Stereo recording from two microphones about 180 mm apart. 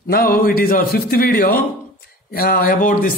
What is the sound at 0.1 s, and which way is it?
Speech, 55° left (ahead or behind).